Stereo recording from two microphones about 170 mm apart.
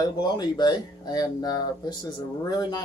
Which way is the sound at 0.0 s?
25° left (ahead or behind).